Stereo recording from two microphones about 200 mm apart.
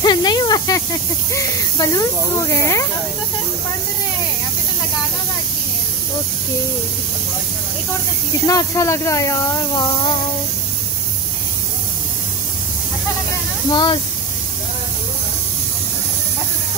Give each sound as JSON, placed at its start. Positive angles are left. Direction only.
{"t": 0.0, "sound": "snake", "side_deg": 20}
{"t": 1.3, "sound": "speech", "side_deg": 15}
{"t": 8.5, "sound": "speech", "side_deg": 15}
{"t": 13.7, "sound": "speech", "side_deg": 20}